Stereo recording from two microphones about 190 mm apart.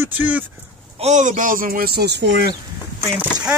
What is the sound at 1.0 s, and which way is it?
Speech, 40° right (ahead or behind).